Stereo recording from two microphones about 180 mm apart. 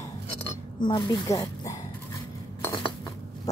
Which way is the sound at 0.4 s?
25° left (ahead or behind).